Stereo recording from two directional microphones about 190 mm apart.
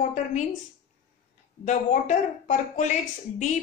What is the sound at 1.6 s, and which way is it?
A woman's voice, 40° left (ahead or behind).